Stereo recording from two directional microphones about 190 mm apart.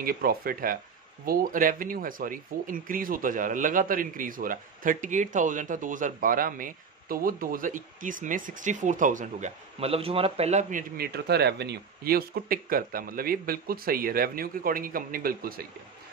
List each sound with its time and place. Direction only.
0.0 s speech: 50° right (ahead or behind)